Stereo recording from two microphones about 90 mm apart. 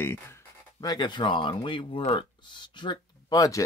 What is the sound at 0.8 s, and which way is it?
Speech, 55° left (ahead or behind).